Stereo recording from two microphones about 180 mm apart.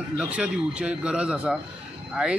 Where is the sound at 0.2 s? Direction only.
5° right (ahead or behind).